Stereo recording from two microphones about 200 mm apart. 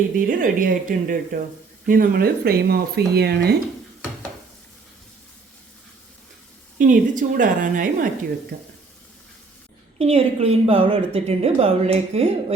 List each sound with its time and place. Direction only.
0.2 s speech: 45° right (ahead or behind)
6.7 s speech: 40° right (ahead or behind)
10.0 s a woman's voice: 30° right (ahead or behind)